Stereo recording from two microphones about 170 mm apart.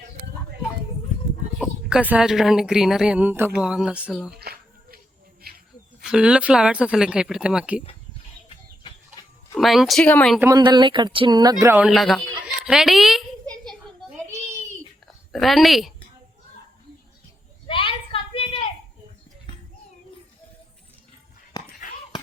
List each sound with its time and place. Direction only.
1.5 s a woman's voice: 5° right (ahead or behind)
4.4 s a sound: 65° right (ahead or behind)
6.0 s speech: 5° right (ahead or behind)
9.6 s speech: centre (ahead or behind)
10.6 s speech: 25° right (ahead or behind)
11.6 s speech: 10° right (ahead or behind)
11.9 s a woman's voice: centre (ahead or behind)
15.0 s a woman's voice: centre (ahead or behind)
17.7 s a sound: 30° left (ahead or behind)